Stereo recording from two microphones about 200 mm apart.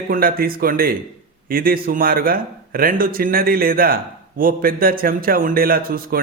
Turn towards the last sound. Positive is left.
turn(degrees=-45)  # may be behind; listen again after turning